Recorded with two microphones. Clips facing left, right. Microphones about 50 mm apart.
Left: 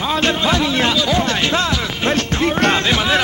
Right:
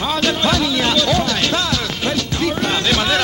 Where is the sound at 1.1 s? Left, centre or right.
Left.